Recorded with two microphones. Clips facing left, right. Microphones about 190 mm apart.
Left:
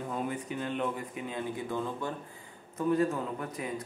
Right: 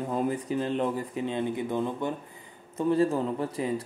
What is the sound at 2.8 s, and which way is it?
Speech, 30° right (ahead or behind).